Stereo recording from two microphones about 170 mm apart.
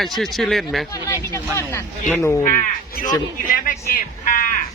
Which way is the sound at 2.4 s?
50° left (ahead or behind).